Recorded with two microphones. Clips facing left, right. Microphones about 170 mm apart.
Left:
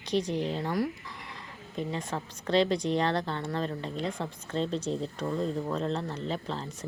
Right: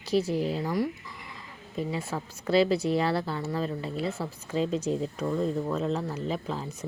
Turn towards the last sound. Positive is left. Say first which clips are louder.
# right 2 dB
turn(degrees=-5)  # may be behind; listen again after turning